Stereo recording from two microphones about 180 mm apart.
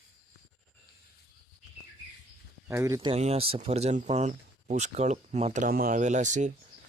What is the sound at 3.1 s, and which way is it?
Speech, 35° right (ahead or behind).